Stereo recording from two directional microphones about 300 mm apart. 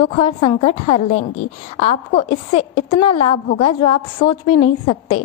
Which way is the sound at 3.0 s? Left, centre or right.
Centre.